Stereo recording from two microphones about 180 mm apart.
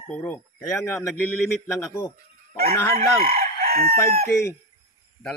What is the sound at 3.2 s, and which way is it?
Chicken, 55° right (ahead or behind).